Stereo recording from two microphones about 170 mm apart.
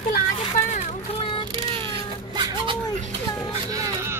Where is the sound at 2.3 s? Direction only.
30° right (ahead or behind).